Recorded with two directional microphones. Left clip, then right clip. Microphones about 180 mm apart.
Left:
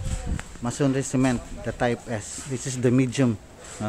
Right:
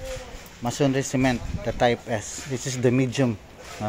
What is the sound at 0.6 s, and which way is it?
A man's voice, 10° left (ahead or behind).